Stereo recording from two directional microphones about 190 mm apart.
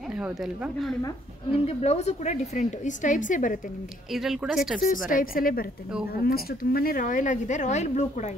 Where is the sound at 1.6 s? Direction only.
35° left (ahead or behind).